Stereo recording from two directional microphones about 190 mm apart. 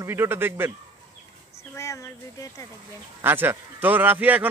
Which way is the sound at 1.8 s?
15° left (ahead or behind).